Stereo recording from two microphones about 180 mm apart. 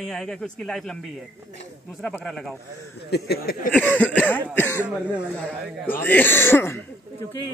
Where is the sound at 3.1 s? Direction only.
65° left (ahead or behind).